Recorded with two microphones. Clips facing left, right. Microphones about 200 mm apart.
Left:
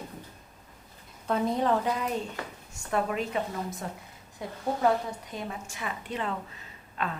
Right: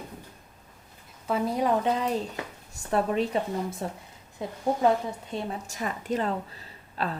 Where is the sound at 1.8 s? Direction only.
30° right (ahead or behind).